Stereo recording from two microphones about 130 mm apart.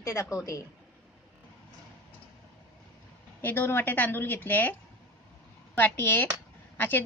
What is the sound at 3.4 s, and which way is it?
A woman's voice, 15° left (ahead or behind).